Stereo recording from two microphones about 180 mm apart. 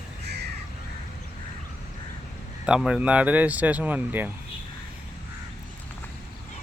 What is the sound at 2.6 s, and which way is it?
Speech, 5° right (ahead or behind).